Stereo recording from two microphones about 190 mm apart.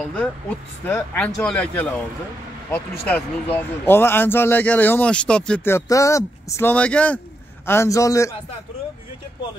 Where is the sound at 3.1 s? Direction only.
10° left (ahead or behind).